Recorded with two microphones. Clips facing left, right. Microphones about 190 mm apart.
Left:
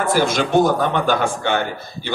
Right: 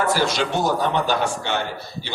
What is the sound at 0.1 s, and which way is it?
A man's voice, 50° left (ahead or behind).